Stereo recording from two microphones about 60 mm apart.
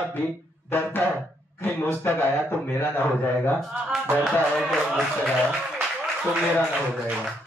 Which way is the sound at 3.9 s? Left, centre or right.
Centre.